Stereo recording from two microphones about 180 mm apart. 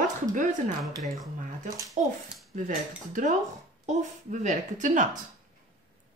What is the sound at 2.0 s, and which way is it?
Speech, 40° right (ahead or behind).